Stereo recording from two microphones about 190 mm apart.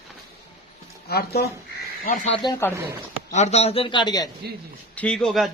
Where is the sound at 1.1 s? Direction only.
55° left (ahead or behind).